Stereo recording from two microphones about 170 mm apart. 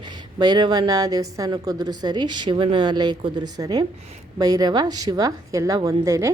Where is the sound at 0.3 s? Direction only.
25° right (ahead or behind).